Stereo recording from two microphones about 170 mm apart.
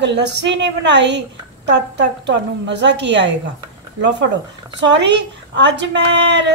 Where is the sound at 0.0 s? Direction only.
90° right.